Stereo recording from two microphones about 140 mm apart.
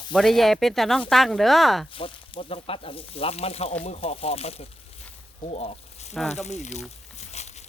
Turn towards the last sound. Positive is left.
turn(degrees=50)  # may be behind; listen again after turning